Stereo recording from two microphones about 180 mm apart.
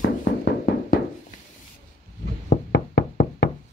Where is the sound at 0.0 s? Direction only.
70° left (ahead or behind).